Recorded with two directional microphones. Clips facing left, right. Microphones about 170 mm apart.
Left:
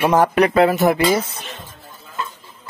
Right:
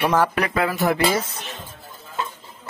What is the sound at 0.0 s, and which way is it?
Speech, 20° left (ahead or behind).